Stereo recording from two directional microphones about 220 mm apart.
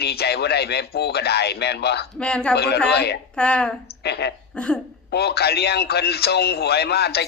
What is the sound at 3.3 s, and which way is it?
Speech, 5° left (ahead or behind).